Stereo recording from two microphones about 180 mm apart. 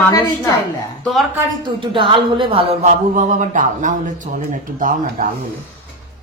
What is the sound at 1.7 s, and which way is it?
Speech, 30° right (ahead or behind).